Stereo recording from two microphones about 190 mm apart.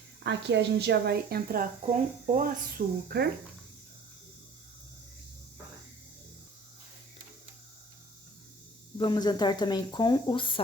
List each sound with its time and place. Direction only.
0.2 s a woman's voice: 65° right (ahead or behind)
9.0 s speech: 20° left (ahead or behind)